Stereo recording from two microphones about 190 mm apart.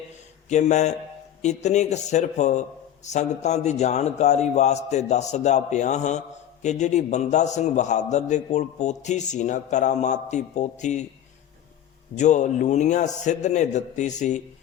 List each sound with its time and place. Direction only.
0.4 s speech: 40° left (ahead or behind)
12.1 s speech: 40° left (ahead or behind)